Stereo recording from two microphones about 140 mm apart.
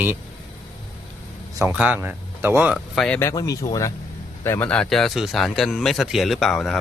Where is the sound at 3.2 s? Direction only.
20° left (ahead or behind).